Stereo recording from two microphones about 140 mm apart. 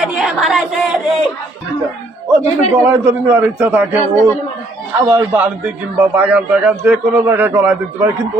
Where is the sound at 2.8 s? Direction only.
20° right (ahead or behind).